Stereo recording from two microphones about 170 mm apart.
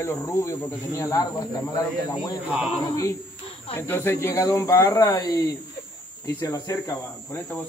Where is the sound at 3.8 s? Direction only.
15° left (ahead or behind).